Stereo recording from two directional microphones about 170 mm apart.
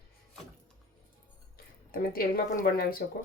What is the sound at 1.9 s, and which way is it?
Speech, 60° left (ahead or behind).